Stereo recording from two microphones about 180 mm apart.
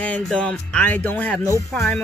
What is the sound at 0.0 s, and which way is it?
Speech, 5° left (ahead or behind).